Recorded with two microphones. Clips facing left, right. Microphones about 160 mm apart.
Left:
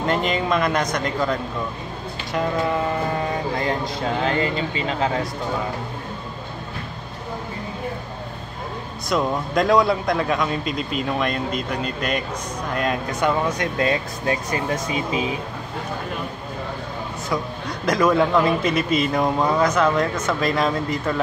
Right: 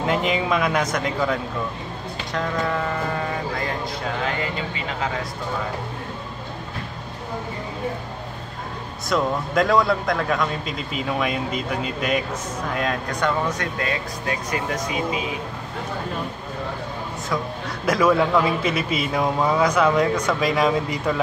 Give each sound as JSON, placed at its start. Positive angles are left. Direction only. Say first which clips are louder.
{"t": 0.0, "sound": "a man's voice", "louder": "even", "side_deg": -5}
{"t": 9.1, "sound": "a man's voice", "louder": "even", "side_deg": 0}
{"t": 13.6, "sound": "speech", "louder": "left 4 dB", "side_deg": 25}
{"t": 17.8, "sound": "speech", "louder": "even", "side_deg": -5}